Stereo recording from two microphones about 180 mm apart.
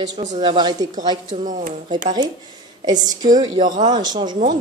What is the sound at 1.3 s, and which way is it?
Speech, 45° right (ahead or behind).